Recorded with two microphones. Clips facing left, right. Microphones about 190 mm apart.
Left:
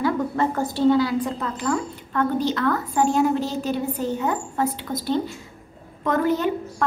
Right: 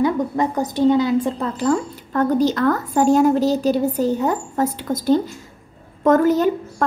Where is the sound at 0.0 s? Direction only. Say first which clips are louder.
Right 3 dB; 20° right (ahead or behind).